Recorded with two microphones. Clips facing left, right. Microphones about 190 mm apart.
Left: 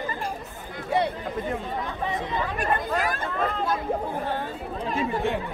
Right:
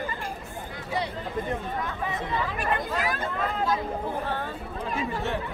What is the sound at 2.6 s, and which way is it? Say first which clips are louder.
Speech: left 5 dB; 45° left (ahead or behind).